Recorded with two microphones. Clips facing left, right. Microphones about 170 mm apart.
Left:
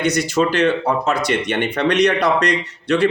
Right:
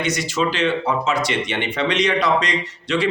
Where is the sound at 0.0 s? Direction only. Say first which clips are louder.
Left 4 dB; 60° left (ahead or behind).